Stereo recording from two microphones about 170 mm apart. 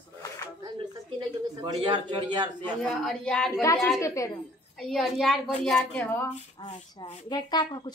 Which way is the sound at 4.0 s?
20° left (ahead or behind).